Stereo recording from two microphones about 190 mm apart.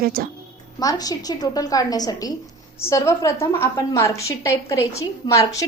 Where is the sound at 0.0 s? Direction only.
50° right (ahead or behind).